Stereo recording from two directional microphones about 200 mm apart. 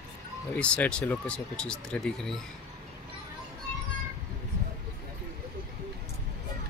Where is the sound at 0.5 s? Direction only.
5° left (ahead or behind).